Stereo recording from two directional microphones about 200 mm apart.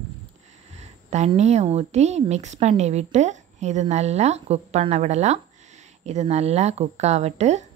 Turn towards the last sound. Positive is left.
turn(degrees=-35)  # may be behind; listen again after turning